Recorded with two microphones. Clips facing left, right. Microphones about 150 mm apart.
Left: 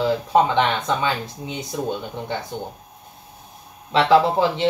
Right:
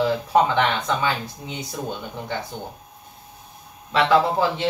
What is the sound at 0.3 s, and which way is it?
Speech, 20° left (ahead or behind).